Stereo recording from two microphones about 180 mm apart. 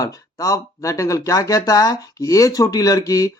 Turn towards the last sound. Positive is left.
turn(degrees=20)  # may be behind; listen again after turning